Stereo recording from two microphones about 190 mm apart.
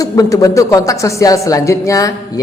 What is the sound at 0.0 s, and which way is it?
A man's voice, 20° left (ahead or behind).